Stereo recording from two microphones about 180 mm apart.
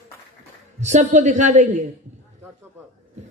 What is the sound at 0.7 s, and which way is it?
A woman's voice, 40° right (ahead or behind).